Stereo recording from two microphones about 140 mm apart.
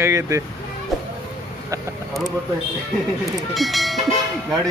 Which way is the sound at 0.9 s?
Centre (ahead or behind).